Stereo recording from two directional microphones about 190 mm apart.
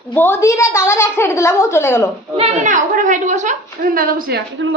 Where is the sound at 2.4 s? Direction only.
40° right (ahead or behind).